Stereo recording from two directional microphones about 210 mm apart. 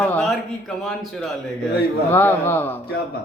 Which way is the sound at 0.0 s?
5° left (ahead or behind).